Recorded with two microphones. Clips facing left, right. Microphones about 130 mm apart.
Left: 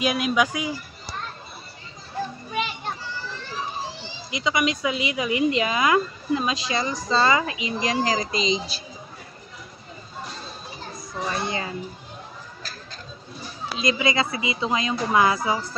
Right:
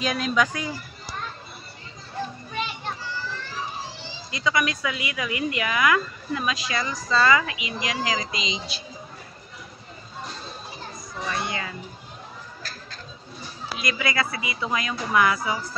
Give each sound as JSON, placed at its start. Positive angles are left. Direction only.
{"t": 0.0, "sound": "speech", "side_deg": 10}
{"t": 4.3, "sound": "speech", "side_deg": 15}
{"t": 11.2, "sound": "speech", "side_deg": 30}
{"t": 13.7, "sound": "speech", "side_deg": 25}